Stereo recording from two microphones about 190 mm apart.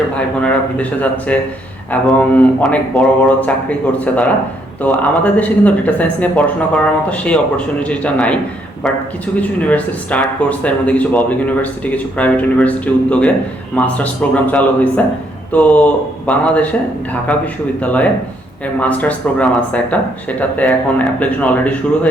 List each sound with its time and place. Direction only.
0.2 s speech: 5° left (ahead or behind)
9.4 s speech: 10° left (ahead or behind)
18.8 s speech: 10° left (ahead or behind)